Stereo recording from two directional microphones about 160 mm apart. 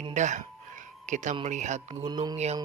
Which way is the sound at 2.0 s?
25° right (ahead or behind).